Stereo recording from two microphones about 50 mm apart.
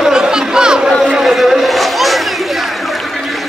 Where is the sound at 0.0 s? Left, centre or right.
Centre.